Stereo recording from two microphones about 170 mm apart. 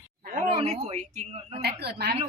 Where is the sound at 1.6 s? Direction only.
70° right (ahead or behind).